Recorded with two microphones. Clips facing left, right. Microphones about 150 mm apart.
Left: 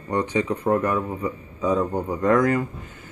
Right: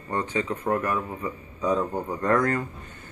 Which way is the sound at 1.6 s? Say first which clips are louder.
Left 3 dB; 5° left (ahead or behind).